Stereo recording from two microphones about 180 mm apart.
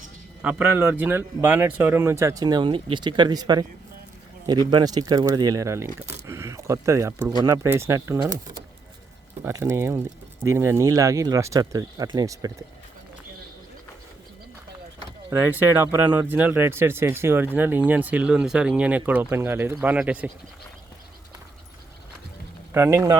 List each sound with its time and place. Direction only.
0.4 s speech: 10° right (ahead or behind)
15.3 s speech: 10° right (ahead or behind)
22.7 s speech: 15° right (ahead or behind)